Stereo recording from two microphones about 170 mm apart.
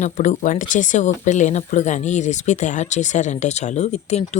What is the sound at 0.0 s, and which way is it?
A woman's voice, 45° left (ahead or behind).